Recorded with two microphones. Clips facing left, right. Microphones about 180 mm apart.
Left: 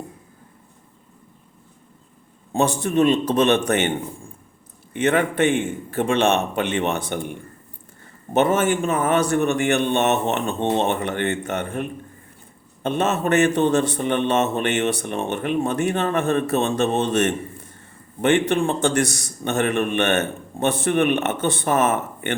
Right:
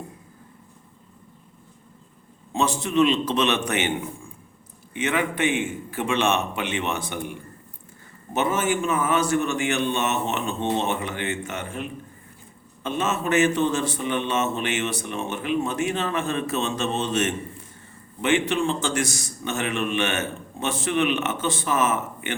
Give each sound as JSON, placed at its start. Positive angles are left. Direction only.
{"t": 2.5, "sound": "a man's voice", "side_deg": 50}
{"t": 4.9, "sound": "a man's voice", "side_deg": 55}